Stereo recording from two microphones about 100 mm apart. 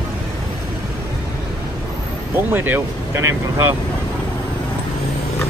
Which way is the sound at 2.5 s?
20° right (ahead or behind).